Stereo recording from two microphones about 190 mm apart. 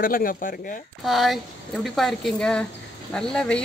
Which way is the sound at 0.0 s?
50° left (ahead or behind).